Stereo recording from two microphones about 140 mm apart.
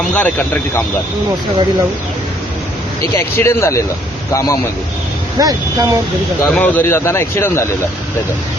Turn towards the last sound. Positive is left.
turn(degrees=20)  # may be behind; listen again after turning